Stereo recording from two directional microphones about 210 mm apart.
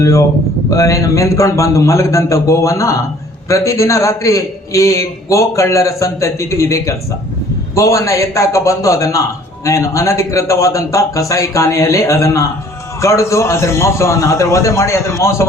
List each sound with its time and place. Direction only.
0.0 s a man's voice: 15° left (ahead or behind)